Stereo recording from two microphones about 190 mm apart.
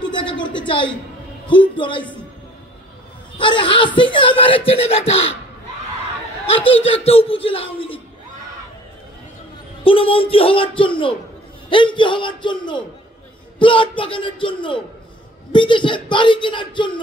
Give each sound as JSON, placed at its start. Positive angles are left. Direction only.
{"t": 0.0, "sound": "a sound", "side_deg": 25}
{"t": 1.8, "sound": "speech", "side_deg": 25}
{"t": 3.3, "sound": "speech", "side_deg": 25}
{"t": 6.8, "sound": "speech", "side_deg": 30}
{"t": 9.8, "sound": "speech", "side_deg": 30}